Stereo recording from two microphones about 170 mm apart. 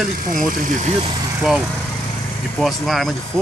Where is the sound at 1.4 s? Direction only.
5° right (ahead or behind).